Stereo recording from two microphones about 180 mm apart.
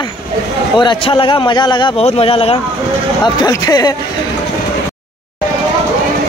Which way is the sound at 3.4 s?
20° left (ahead or behind).